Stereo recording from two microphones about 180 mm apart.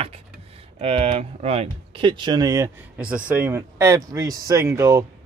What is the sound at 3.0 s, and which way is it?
Speech, 5° right (ahead or behind).